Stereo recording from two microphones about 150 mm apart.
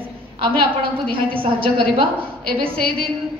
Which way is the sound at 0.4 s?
35° right (ahead or behind).